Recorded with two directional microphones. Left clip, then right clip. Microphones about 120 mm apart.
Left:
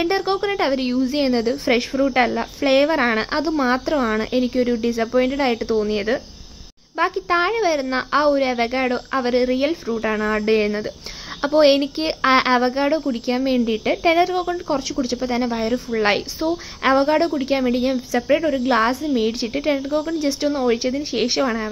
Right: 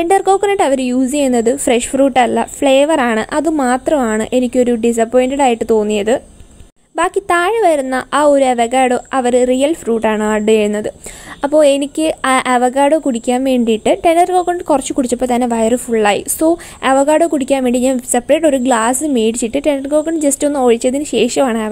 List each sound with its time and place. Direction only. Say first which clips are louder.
0.0 s speech: right 9 dB; 40° right (ahead or behind)